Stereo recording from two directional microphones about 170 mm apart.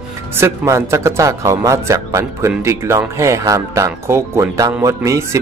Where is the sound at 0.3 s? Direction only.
15° right (ahead or behind).